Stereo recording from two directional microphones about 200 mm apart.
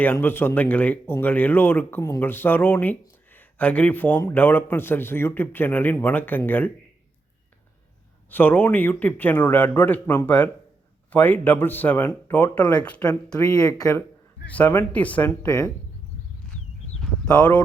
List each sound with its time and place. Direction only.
0.0 s speech: 10° left (ahead or behind)
8.3 s speech: 10° left (ahead or behind)
13.5 s speech: 15° left (ahead or behind)
17.0 s a sound: 5° left (ahead or behind)